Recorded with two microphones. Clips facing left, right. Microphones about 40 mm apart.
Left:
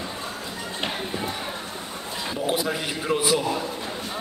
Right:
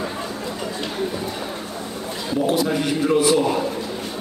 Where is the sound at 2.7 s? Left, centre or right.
Centre.